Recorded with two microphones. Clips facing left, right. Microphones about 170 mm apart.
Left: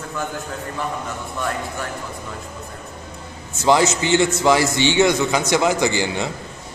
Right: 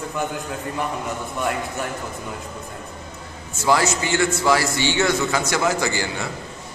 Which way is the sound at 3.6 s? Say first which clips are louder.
Left 3 dB; 20° left (ahead or behind).